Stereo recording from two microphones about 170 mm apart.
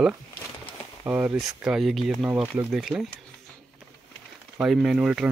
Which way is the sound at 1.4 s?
Centre (ahead or behind).